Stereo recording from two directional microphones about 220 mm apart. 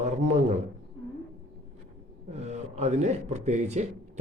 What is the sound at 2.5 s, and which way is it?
A man's voice, 30° right (ahead or behind).